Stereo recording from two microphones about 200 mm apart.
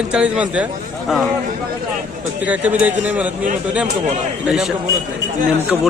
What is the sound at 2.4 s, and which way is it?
Speech, 10° right (ahead or behind).